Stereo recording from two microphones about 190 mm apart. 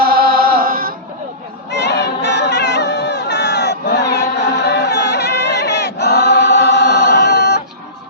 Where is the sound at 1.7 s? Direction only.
65° left (ahead or behind).